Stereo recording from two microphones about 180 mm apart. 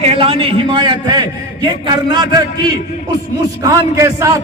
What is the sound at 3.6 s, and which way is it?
Speech, 15° right (ahead or behind).